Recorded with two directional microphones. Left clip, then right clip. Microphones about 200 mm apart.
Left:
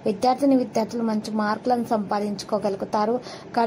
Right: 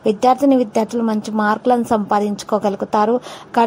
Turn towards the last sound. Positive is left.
turn(degrees=-25)  # may be behind; listen again after turning